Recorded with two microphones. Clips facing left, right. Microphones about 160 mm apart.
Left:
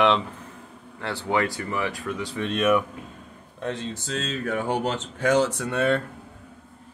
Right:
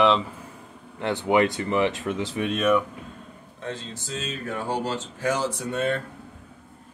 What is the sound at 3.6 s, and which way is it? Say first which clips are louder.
Speech: left 4 dB; 65° left (ahead or behind).